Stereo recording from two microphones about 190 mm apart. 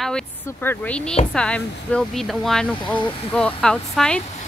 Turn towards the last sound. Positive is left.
turn(degrees=5)  # may be behind; listen again after turning